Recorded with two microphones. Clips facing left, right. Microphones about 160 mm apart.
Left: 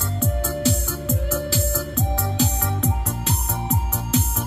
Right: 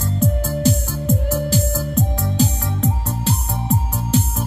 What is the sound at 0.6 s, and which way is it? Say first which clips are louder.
Music: right 5 dB; 45° right (ahead or behind).